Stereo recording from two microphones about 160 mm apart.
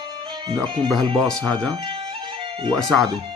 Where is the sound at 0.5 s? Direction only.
25° right (ahead or behind).